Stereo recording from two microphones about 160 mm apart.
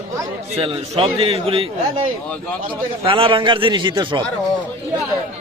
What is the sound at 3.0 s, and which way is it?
A man's voice, 35° right (ahead or behind).